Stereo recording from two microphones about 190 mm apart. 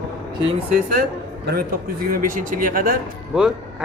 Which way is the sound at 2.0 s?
45° right (ahead or behind).